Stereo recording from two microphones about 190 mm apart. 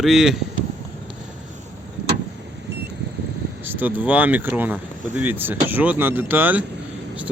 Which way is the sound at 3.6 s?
10° right (ahead or behind).